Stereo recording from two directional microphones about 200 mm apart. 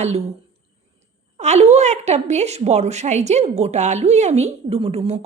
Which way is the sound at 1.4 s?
35° right (ahead or behind).